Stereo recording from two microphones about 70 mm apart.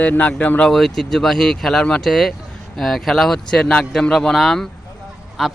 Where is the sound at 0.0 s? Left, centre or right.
Centre.